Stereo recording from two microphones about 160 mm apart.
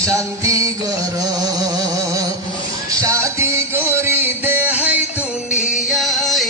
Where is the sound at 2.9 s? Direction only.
20° right (ahead or behind).